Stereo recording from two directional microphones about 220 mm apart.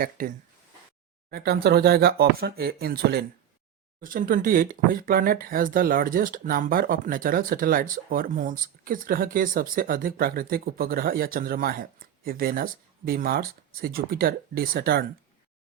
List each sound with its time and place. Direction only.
0.2 s speech: 40° right (ahead or behind)